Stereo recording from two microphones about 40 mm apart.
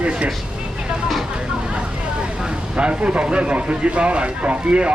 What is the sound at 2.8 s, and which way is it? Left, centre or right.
Speech, right.